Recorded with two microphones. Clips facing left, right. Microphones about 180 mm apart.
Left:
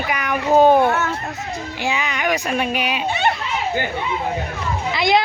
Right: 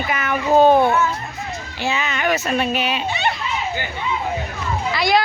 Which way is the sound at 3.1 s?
50° left (ahead or behind).